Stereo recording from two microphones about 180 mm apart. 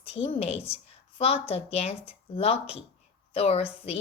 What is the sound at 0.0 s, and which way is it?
A woman's voice, 35° left (ahead or behind).